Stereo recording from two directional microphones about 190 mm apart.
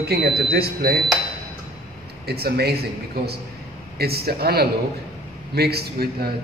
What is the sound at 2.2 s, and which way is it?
Speech, 55° right (ahead or behind).